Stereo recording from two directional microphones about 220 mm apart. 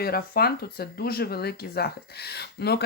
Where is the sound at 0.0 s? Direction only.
45° left (ahead or behind).